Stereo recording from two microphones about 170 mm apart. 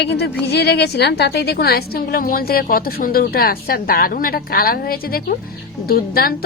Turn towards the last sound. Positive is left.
turn(degrees=60)  # may be behind; listen again after turning